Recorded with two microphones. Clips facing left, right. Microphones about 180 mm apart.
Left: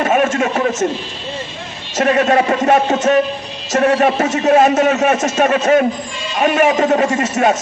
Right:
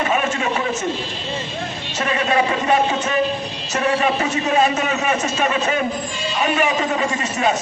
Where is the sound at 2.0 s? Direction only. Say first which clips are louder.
Left 6 dB; 45° left (ahead or behind).